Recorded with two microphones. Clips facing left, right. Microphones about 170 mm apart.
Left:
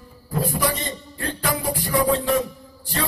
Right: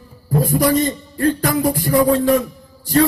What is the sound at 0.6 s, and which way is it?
Music, 45° right (ahead or behind).